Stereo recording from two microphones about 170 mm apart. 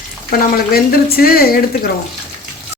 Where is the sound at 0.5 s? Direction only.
60° left (ahead or behind).